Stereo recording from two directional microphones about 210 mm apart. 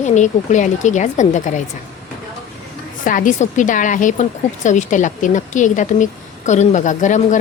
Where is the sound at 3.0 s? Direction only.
40° left (ahead or behind).